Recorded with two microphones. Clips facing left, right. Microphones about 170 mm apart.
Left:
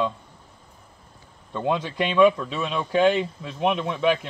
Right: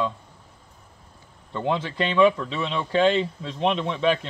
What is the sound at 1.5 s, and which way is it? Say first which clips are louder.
Speech: left 1 dB; 15° left (ahead or behind).